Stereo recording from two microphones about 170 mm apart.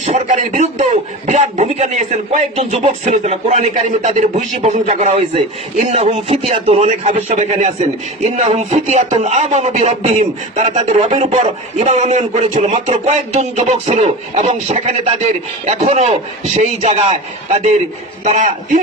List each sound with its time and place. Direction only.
0.0 s a man's voice: 45° right (ahead or behind)
18.3 s a man's voice: 45° right (ahead or behind)